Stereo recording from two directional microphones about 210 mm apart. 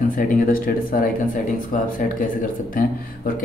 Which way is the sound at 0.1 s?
40° left (ahead or behind).